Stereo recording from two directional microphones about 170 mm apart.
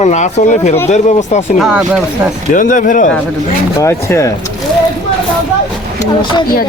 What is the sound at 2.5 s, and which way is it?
Speech, 50° left (ahead or behind).